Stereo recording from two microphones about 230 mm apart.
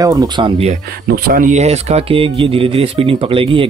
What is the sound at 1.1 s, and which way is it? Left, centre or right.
Speech, right.